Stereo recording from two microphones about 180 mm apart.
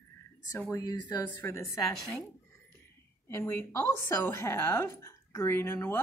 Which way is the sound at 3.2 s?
15° left (ahead or behind).